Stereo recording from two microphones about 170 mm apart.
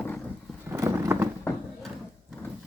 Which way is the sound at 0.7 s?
15° right (ahead or behind).